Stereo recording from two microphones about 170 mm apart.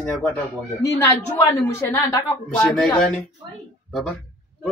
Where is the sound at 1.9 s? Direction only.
20° left (ahead or behind).